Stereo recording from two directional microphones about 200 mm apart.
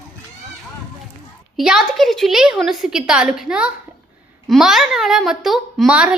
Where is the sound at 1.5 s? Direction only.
Centre (ahead or behind).